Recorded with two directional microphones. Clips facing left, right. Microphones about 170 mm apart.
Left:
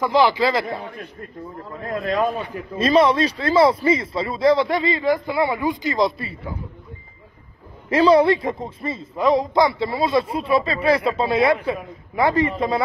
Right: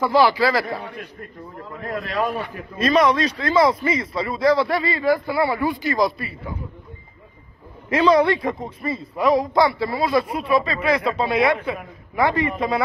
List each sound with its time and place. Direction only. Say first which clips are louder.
0.0 s a man's voice: even; 20° left (ahead or behind)
2.8 s a man's voice: left 1 dB; 30° left (ahead or behind)
7.9 s a man's voice: left 2 dB; 30° left (ahead or behind)